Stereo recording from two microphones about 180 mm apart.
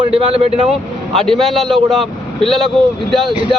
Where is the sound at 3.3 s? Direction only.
30° right (ahead or behind).